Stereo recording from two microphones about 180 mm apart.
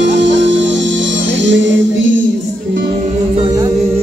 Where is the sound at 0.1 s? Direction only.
90° right.